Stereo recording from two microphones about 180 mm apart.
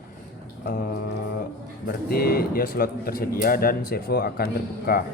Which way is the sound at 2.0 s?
55° left (ahead or behind).